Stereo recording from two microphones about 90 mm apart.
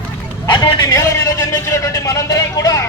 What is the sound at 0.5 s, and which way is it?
Speech, 55° left (ahead or behind).